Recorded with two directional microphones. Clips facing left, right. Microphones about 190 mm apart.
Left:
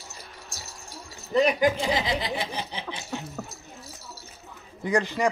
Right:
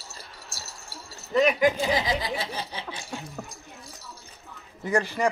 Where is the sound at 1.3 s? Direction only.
35° left (ahead or behind).